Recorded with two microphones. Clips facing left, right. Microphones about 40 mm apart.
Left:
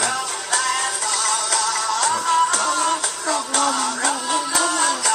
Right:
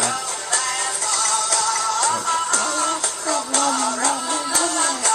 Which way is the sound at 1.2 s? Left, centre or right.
Centre.